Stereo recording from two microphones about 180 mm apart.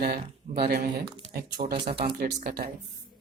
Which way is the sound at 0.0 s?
60° right (ahead or behind).